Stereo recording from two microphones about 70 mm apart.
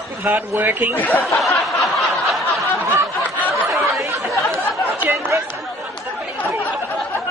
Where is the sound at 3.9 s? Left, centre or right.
Right.